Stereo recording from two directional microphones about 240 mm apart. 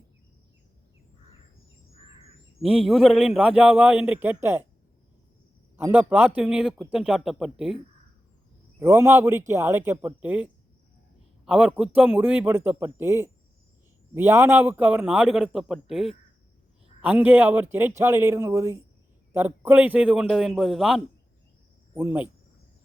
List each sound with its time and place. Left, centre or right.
1.9 s bird: left
2.6 s speech: centre
5.7 s speech: centre
8.8 s a man's voice: centre